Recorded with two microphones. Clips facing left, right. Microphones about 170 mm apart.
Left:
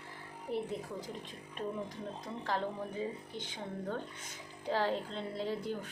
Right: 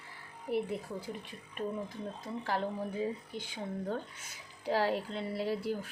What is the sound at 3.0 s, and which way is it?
Speech, 10° right (ahead or behind).